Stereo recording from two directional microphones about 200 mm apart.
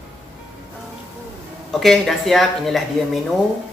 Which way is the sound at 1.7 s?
Centre (ahead or behind).